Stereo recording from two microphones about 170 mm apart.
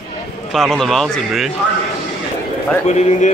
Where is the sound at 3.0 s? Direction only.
45° left (ahead or behind).